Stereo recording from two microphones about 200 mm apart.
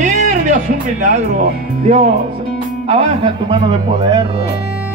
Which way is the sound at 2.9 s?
25° right (ahead or behind).